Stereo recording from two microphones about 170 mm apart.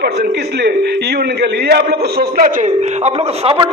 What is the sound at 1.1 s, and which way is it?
A man's voice, 75° right (ahead or behind).